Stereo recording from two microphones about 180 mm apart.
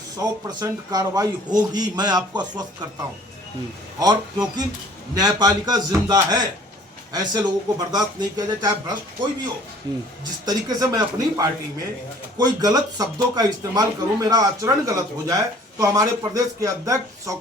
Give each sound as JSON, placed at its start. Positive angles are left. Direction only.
{"t": 0.2, "sound": "speech", "side_deg": -20}
{"t": 4.0, "sound": "speech", "side_deg": -20}